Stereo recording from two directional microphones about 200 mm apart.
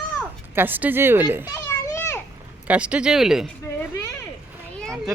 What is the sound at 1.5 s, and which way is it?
Children playing, 15° left (ahead or behind).